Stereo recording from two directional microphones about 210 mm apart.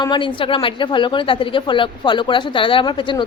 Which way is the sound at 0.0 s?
20° left (ahead or behind).